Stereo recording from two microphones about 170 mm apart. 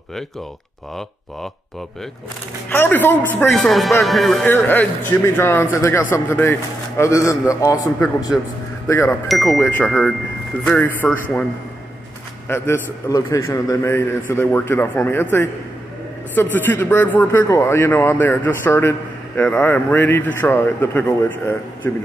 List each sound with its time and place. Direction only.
2.7 s a man's voice: 10° left (ahead or behind)
4.5 s speech: 10° left (ahead or behind)
8.8 s speech: 15° left (ahead or behind)
12.4 s speech: 15° left (ahead or behind)